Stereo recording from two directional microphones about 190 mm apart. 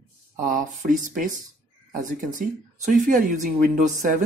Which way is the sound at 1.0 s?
45° right (ahead or behind).